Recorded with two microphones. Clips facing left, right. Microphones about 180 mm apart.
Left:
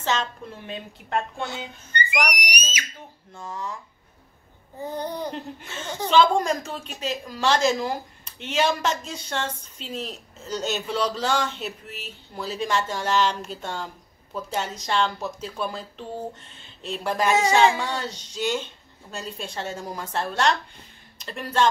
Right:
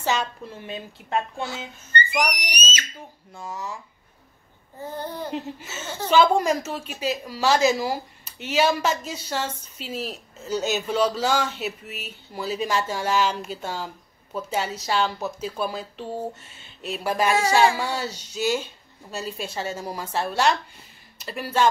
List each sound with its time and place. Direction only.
0.0 s a woman's voice: 10° right (ahead or behind)
2.1 s whistle: 10° left (ahead or behind)
3.3 s a woman's voice: 10° right (ahead or behind)
4.8 s a sound: 20° left (ahead or behind)
5.3 s a woman's voice: 5° right (ahead or behind)